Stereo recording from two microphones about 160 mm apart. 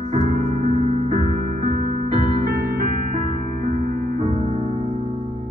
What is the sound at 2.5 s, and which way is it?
Music, 65° right (ahead or behind).